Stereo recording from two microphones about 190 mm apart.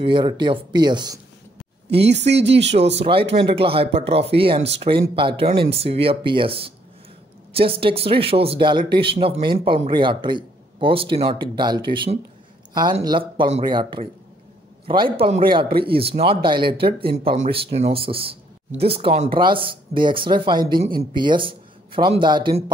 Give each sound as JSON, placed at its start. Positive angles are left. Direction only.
{"t": 0.0, "sound": "speech", "side_deg": -25}
{"t": 1.9, "sound": "speech", "side_deg": -65}
{"t": 3.0, "sound": "speech", "side_deg": -30}